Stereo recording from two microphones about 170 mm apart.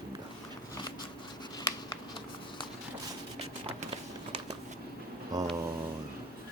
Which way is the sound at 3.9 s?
40° right (ahead or behind).